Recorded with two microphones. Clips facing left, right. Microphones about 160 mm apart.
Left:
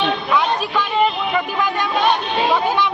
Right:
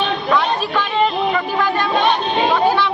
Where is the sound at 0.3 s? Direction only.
10° left (ahead or behind).